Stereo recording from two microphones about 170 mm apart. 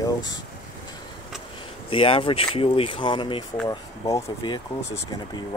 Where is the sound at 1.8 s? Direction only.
35° left (ahead or behind).